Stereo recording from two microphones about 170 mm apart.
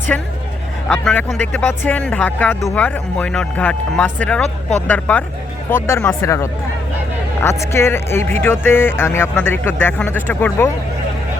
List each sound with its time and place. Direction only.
0.1 s speech: 10° left (ahead or behind)